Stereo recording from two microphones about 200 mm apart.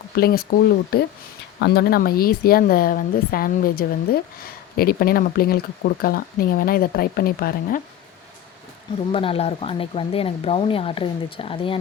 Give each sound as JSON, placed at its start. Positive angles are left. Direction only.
{"t": 0.2, "sound": "speech", "side_deg": 50}
{"t": 9.1, "sound": "speech", "side_deg": 25}